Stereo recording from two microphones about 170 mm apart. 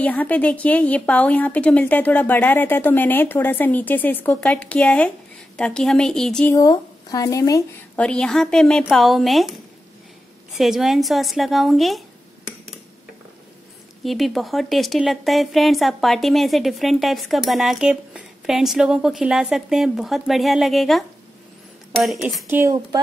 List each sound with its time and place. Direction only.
0.0 s a woman's voice: 10° left (ahead or behind)
6.5 s speech: 20° left (ahead or behind)
7.9 s a woman's voice: 5° left (ahead or behind)
10.6 s a woman's voice: centre (ahead or behind)
14.0 s a woman's voice: centre (ahead or behind)
22.5 s speech: 15° right (ahead or behind)